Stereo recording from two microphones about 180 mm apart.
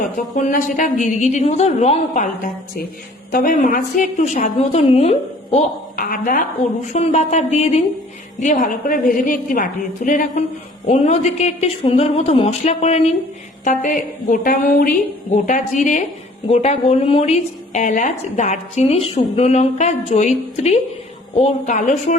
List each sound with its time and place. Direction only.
0.3 s a woman's voice: 45° left (ahead or behind)
6.0 s a woman's voice: 50° left (ahead or behind)
6.9 s a woman's voice: 35° left (ahead or behind)
13.7 s a woman's voice: 45° left (ahead or behind)
16.5 s a woman's voice: 35° left (ahead or behind)